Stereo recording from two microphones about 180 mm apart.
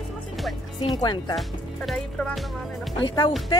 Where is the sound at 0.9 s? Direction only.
25° left (ahead or behind).